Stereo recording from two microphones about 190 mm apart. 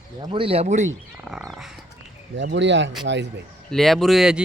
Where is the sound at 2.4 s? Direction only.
65° right (ahead or behind).